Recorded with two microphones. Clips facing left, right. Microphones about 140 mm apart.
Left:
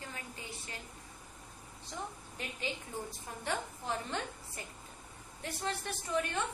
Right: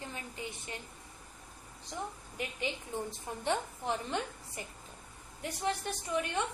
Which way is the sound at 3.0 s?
20° right (ahead or behind).